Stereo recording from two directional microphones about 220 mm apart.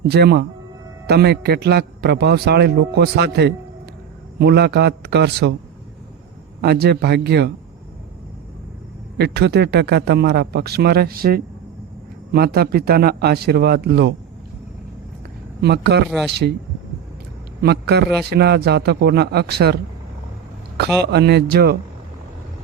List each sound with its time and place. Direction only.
0.1 s a man's voice: 50° right (ahead or behind)
6.6 s a man's voice: 45° right (ahead or behind)
9.1 s a man's voice: 50° right (ahead or behind)
15.6 s a man's voice: 50° right (ahead or behind)
17.6 s a man's voice: 45° right (ahead or behind)
21.0 s a man's voice: 50° right (ahead or behind)